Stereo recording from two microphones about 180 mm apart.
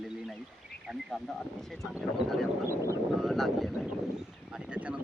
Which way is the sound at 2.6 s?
15° right (ahead or behind).